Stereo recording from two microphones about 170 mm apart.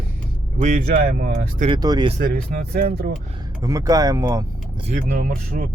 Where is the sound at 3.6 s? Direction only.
20° right (ahead or behind).